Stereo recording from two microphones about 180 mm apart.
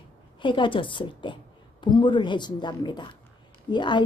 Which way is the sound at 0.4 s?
25° left (ahead or behind).